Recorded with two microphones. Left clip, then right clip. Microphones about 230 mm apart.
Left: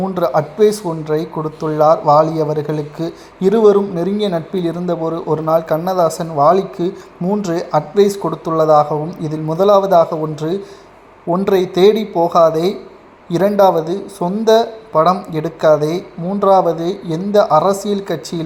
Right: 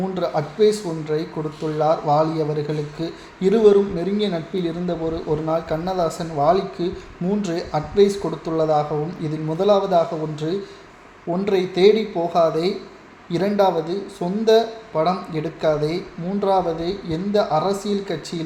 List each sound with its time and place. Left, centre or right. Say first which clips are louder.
0.0 s a man's voice: left 7 dB; left